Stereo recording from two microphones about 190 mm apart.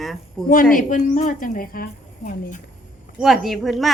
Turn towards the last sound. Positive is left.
turn(degrees=0)  # may be behind; listen again after turning